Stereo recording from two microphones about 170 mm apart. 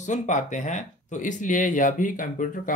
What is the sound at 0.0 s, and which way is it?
Speech, 45° left (ahead or behind).